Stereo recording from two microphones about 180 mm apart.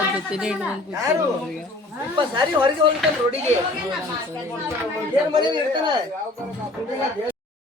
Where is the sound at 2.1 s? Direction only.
25° right (ahead or behind).